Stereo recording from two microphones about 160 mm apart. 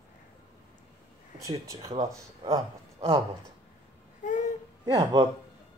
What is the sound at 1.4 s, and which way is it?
Speech, 20° right (ahead or behind).